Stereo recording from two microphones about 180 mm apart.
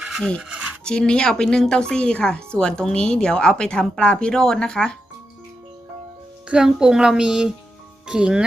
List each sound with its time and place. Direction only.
0.0 s a sound: centre (ahead or behind)
0.9 s a woman's voice: 5° left (ahead or behind)
6.5 s a woman's voice: 5° right (ahead or behind)